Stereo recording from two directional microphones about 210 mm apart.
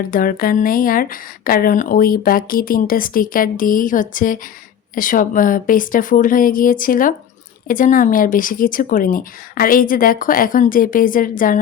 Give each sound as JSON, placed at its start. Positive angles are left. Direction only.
{"t": 0.1, "sound": "speech", "side_deg": 40}